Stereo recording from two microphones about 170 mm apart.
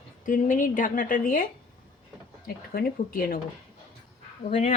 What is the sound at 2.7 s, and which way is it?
Speech, 60° left (ahead or behind).